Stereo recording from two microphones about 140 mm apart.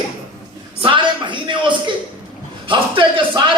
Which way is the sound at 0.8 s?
35° right (ahead or behind).